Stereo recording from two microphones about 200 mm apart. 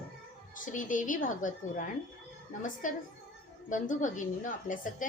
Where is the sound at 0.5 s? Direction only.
40° left (ahead or behind).